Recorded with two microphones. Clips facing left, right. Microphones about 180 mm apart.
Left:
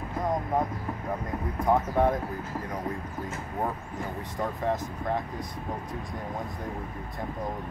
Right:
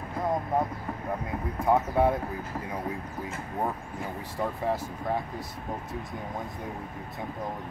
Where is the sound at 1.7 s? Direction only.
10° right (ahead or behind).